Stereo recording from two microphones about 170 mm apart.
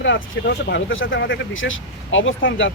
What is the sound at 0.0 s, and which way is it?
Speech, 90° left.